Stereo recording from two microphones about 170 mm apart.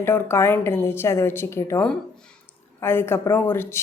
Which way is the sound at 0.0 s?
15° left (ahead or behind).